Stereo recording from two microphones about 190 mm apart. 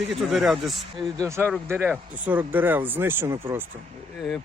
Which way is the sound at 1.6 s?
10° right (ahead or behind).